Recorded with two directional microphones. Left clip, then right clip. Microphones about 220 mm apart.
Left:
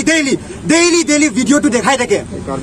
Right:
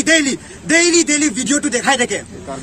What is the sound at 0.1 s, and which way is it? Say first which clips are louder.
A man's voice: left 1 dB; 15° right (ahead or behind).